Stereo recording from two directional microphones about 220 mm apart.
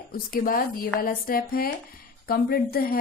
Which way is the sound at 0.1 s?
40° left (ahead or behind).